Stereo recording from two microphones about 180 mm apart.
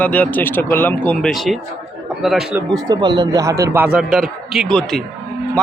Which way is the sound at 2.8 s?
20° right (ahead or behind).